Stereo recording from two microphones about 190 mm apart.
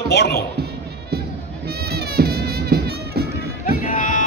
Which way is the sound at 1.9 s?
55° right (ahead or behind).